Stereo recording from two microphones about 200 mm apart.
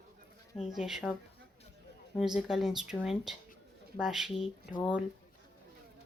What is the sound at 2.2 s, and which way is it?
Speech, 5° right (ahead or behind).